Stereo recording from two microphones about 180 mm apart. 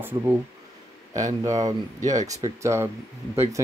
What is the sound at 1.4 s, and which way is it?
Speech, 20° right (ahead or behind).